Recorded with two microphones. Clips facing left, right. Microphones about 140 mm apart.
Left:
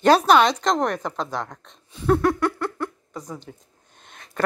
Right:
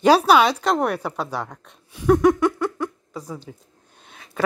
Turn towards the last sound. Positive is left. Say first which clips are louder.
# right 1 dB
turn(degrees=-5)  # may be behind; listen again after turning